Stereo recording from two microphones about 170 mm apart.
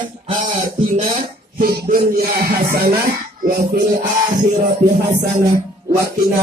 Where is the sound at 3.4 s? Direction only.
55° right (ahead or behind).